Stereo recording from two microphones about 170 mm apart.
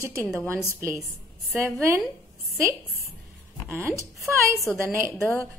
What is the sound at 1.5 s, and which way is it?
Speech, 15° right (ahead or behind).